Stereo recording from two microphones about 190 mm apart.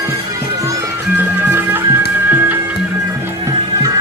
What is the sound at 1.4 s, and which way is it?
Music, 10° right (ahead or behind).